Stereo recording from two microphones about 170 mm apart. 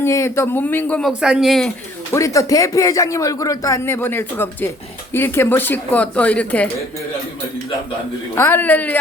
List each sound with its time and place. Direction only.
0.0 s speech: 15° left (ahead or behind)
1.2 s speech: 5° right (ahead or behind)
2.1 s speech: 20° left (ahead or behind)
8.4 s speech: 10° left (ahead or behind)